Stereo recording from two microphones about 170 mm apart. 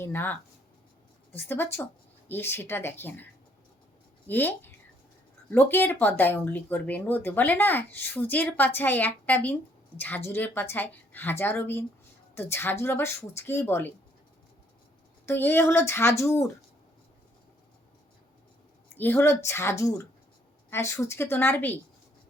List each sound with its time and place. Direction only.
0.0 s speech: 10° left (ahead or behind)
4.3 s a woman's voice: 10° left (ahead or behind)
15.3 s speech: 15° left (ahead or behind)
18.9 s speech: 15° left (ahead or behind)